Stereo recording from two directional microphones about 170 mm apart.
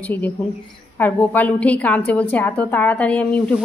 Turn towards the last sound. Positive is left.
turn(degrees=5)  # may be behind; listen again after turning